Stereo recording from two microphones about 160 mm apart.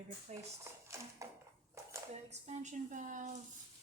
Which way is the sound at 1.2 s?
20° right (ahead or behind).